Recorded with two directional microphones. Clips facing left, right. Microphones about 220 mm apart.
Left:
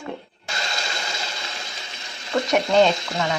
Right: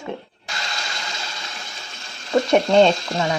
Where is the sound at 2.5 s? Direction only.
30° right (ahead or behind).